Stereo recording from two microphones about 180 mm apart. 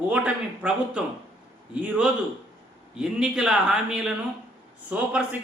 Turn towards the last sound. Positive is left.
turn(degrees=-10)  # may be behind; listen again after turning